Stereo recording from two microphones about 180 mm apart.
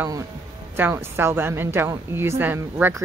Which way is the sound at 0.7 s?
10° right (ahead or behind).